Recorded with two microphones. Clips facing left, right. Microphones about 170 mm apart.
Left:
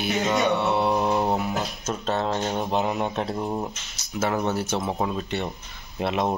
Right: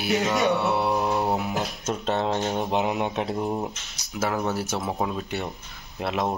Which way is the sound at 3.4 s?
Centre (ahead or behind).